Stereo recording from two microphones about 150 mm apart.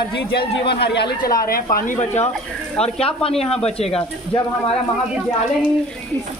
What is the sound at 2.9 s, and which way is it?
Speech, 40° left (ahead or behind).